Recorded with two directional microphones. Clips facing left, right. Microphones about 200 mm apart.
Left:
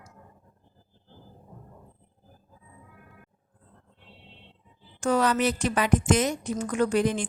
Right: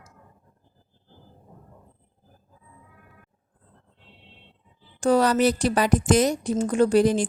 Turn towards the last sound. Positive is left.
turn(degrees=-35)  # may be behind; listen again after turning